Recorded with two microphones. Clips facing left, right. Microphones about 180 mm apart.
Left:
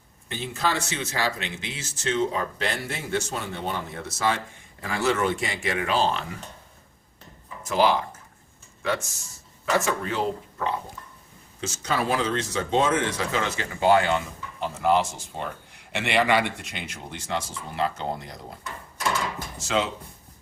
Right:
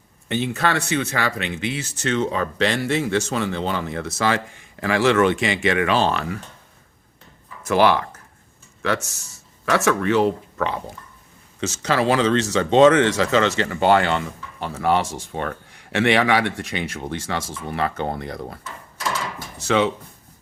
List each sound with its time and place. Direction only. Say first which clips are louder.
0.3 s speech: right 6 dB; 65° right (ahead or behind)
7.7 s speech: right 5 dB; 70° right (ahead or behind)
19.6 s speech: right 7 dB; 65° right (ahead or behind)